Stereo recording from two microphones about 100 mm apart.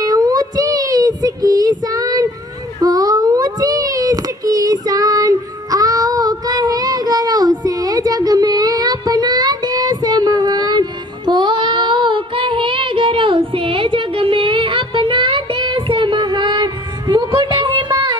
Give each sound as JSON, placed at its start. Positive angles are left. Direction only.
{"t": 0.0, "sound": "child singing", "side_deg": -40}
{"t": 17.6, "sound": "music", "side_deg": -50}